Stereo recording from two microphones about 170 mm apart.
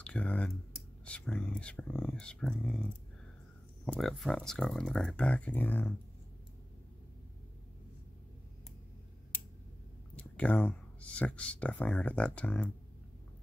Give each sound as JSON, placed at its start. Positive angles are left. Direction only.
{"t": 0.0, "sound": "speech", "side_deg": 5}
{"t": 10.1, "sound": "speech", "side_deg": 10}